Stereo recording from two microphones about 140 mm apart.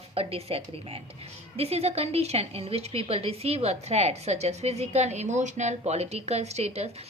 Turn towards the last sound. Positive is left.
turn(degrees=-50)  # may be behind; listen again after turning